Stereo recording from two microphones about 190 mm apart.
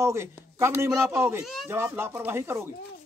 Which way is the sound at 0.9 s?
Centre (ahead or behind).